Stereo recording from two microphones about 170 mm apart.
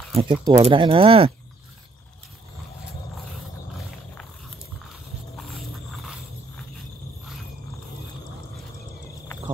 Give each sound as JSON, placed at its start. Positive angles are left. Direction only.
{"t": 0.1, "sound": "speech", "side_deg": -30}